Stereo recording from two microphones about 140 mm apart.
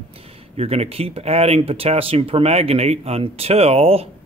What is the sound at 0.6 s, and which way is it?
Speech, 45° right (ahead or behind).